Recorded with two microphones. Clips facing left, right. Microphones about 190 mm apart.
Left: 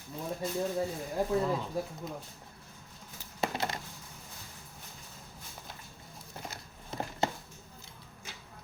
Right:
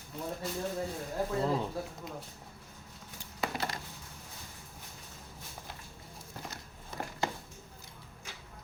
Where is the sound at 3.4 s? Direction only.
25° left (ahead or behind).